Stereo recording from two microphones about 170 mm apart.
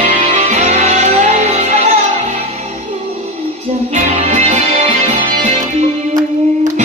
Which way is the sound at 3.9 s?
40° right (ahead or behind).